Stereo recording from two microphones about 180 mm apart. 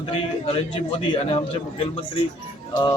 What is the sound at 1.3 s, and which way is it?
Speech, 30° left (ahead or behind).